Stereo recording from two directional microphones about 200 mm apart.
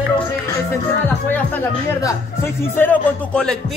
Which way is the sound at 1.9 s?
15° left (ahead or behind).